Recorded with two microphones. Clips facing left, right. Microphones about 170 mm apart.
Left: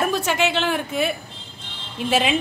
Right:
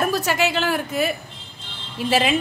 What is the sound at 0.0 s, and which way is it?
A woman's voice, centre (ahead or behind).